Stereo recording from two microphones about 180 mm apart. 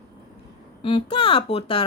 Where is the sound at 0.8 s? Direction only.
30° left (ahead or behind).